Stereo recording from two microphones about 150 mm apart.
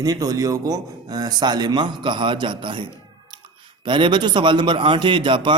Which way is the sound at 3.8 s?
30° right (ahead or behind).